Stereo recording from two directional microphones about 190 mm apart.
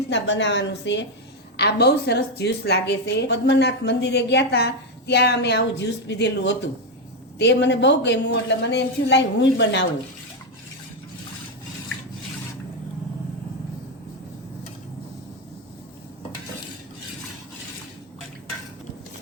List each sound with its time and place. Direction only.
0.1 s a woman's voice: 70° left (ahead or behind)